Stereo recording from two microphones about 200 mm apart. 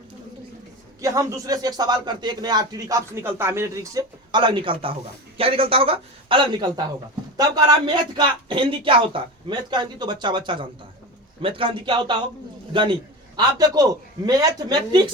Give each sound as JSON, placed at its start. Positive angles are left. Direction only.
{"t": 1.0, "sound": "a man's voice", "side_deg": -15}